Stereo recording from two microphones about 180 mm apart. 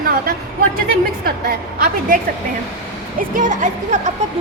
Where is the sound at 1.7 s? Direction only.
50° right (ahead or behind).